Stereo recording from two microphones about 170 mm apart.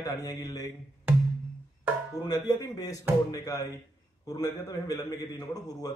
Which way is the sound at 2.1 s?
25° left (ahead or behind).